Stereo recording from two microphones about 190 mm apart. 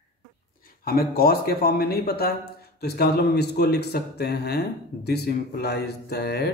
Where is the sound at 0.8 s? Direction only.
50° left (ahead or behind).